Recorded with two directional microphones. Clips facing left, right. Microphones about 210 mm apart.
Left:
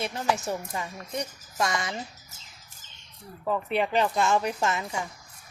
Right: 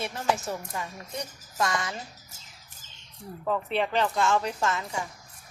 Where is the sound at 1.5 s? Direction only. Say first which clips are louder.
Even; 15° left (ahead or behind).